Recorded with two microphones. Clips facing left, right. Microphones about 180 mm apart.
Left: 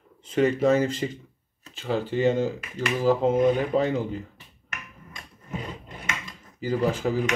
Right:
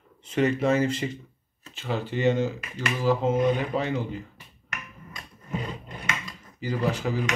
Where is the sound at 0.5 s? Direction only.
40° left (ahead or behind).